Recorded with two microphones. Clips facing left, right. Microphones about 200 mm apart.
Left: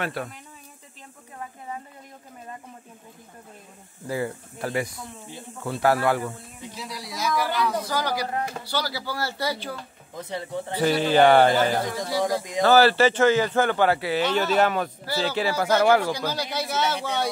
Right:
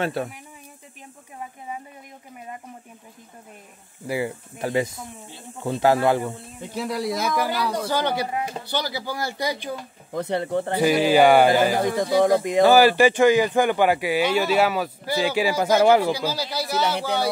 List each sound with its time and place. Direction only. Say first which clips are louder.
0.0 s speech: right 4 dB; 25° right (ahead or behind)
4.1 s speech: right 2 dB; 15° right (ahead or behind)
6.7 s speech: right 12 dB; 55° right (ahead or behind)
7.9 s speech: right 3 dB; 25° right (ahead or behind)
10.1 s speech: right 7 dB; 60° right (ahead or behind)
10.8 s speech: right 2 dB; 10° right (ahead or behind)
11.8 s speech: right 7 dB; 55° right (ahead or behind)
12.6 s speech: right 1 dB; 15° right (ahead or behind)
16.1 s speech: right 3 dB; 10° right (ahead or behind)